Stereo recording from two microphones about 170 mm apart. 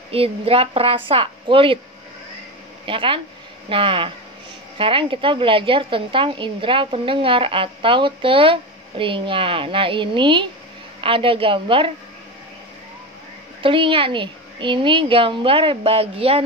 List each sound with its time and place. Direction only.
0.1 s a woman's voice: 35° right (ahead or behind)
2.8 s a woman's voice: 30° right (ahead or behind)
13.6 s a woman's voice: 30° right (ahead or behind)